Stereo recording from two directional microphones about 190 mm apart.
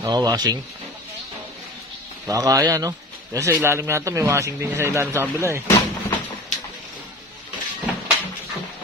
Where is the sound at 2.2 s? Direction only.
20° right (ahead or behind).